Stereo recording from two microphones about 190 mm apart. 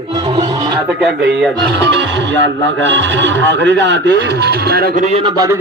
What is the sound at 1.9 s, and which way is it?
Music, 70° right (ahead or behind).